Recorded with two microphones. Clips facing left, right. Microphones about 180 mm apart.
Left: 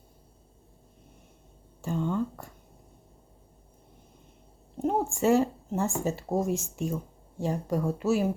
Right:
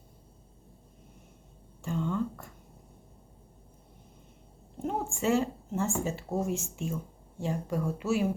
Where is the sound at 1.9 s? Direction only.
35° left (ahead or behind).